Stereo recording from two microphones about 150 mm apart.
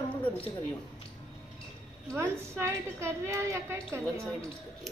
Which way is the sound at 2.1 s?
20° right (ahead or behind).